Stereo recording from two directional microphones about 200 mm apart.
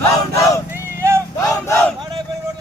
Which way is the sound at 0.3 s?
15° left (ahead or behind).